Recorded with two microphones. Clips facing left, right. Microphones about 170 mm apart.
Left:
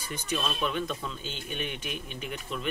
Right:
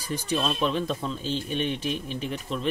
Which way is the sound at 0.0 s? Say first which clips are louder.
Right 5 dB; 35° right (ahead or behind).